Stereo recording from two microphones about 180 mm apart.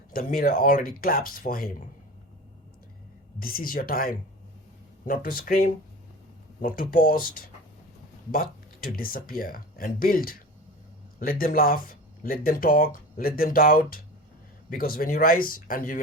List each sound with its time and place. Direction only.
0.1 s speech: 55° left (ahead or behind)
3.4 s speech: 55° left (ahead or behind)